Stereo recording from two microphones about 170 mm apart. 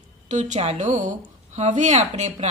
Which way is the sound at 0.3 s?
45° right (ahead or behind).